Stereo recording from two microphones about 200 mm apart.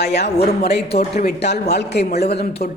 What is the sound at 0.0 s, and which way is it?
Speech, 55° left (ahead or behind).